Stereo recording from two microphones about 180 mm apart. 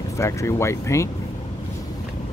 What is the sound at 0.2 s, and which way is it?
Speech, 15° left (ahead or behind).